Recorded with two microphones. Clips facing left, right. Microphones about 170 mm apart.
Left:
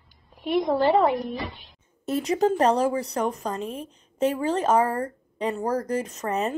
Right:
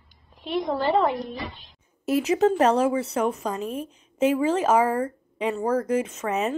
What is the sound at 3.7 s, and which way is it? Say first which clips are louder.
Speech: right 3 dB; 35° left (ahead or behind).